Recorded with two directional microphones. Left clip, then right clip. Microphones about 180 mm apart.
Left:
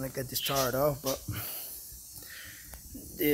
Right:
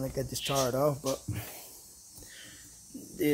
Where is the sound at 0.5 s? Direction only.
5° left (ahead or behind).